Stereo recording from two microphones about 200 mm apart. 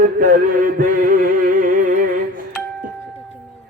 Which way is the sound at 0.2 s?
45° right (ahead or behind).